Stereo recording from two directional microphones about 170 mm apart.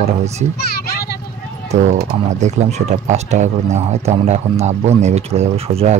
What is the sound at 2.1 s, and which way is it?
Speech, 45° right (ahead or behind).